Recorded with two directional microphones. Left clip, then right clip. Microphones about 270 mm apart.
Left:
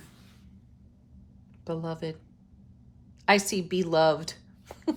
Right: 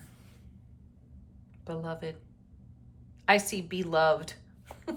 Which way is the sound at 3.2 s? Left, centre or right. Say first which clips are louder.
Left 2 dB; centre.